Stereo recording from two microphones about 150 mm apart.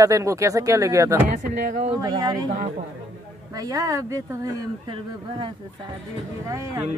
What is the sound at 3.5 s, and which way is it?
Speech, 25° right (ahead or behind).